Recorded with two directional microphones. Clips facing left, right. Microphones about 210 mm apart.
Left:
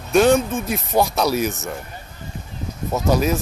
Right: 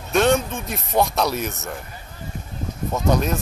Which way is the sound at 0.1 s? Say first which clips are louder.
Left 3 dB; centre (ahead or behind).